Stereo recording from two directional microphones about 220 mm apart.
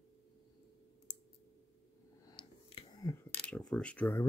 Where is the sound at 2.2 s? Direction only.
20° left (ahead or behind).